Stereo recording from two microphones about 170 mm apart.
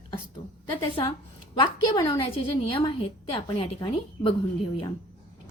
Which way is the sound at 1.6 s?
30° left (ahead or behind).